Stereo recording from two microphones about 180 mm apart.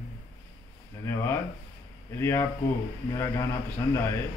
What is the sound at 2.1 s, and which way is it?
Mantra, 15° left (ahead or behind).